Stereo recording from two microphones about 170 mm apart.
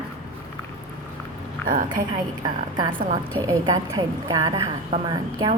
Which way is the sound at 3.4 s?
20° right (ahead or behind).